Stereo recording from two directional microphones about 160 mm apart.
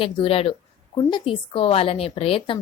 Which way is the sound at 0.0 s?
35° left (ahead or behind).